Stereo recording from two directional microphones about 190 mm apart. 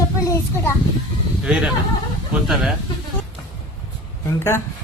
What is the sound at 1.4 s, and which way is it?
Speech, 5° right (ahead or behind).